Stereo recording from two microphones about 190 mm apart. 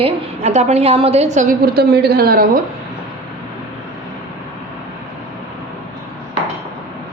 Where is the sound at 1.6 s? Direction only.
55° right (ahead or behind).